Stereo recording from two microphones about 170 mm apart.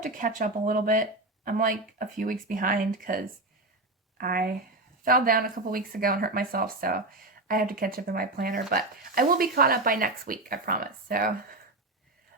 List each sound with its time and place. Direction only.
0.0 s speech: 50° right (ahead or behind)